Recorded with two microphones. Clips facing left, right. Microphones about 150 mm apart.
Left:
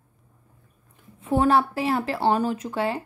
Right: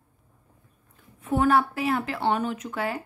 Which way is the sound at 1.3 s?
30° left (ahead or behind).